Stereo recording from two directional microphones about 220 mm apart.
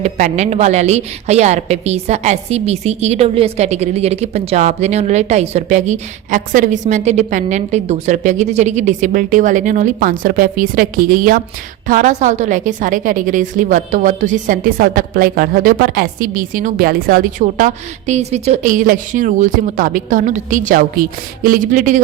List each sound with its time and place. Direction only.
0.0 s a woman's voice: 30° right (ahead or behind)